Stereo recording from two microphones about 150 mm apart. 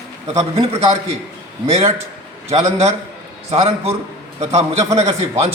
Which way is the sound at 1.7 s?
45° right (ahead or behind).